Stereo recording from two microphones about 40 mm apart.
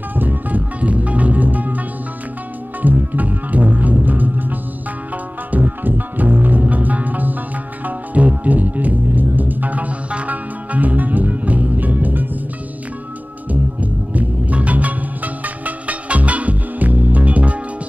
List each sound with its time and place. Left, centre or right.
0.1 s music: right
2.8 s music: right
13.5 s music: right